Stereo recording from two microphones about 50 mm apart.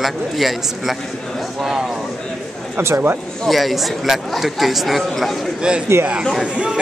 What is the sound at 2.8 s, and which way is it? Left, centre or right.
Speech, right.